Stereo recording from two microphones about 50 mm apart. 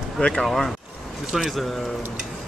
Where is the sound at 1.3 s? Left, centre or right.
Centre.